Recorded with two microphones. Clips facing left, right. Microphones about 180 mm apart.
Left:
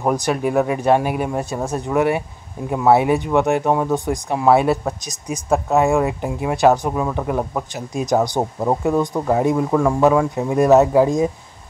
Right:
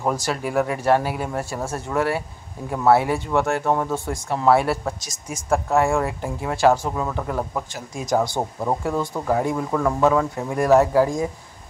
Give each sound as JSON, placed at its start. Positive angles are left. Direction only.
{"t": 0.0, "sound": "speech", "side_deg": 20}